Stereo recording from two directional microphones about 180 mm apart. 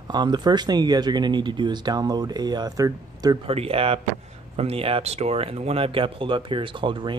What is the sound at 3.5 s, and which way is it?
Speech, 35° right (ahead or behind).